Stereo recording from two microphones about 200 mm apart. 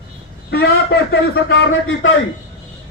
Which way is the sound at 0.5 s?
55° left (ahead or behind).